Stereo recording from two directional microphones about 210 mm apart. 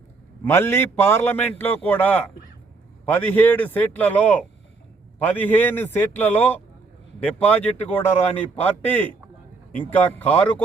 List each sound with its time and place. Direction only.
0.4 s a man's voice: 10° left (ahead or behind)